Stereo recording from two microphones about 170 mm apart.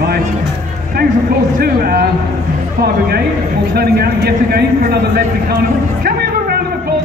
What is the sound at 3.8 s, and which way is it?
A man's voice, 70° right (ahead or behind).